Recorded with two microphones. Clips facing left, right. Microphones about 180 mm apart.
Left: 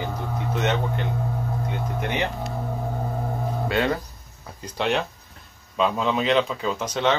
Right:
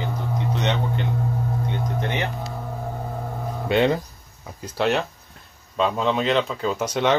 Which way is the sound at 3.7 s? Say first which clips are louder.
Right 5 dB; 20° right (ahead or behind).